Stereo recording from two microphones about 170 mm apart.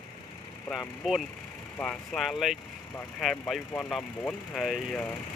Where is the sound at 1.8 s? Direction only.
Centre (ahead or behind).